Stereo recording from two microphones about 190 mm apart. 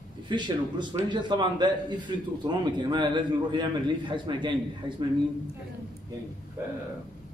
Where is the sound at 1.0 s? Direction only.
25° right (ahead or behind).